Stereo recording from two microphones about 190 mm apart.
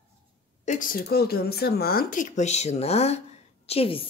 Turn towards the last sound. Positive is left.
turn(degrees=30)  # may be behind; listen again after turning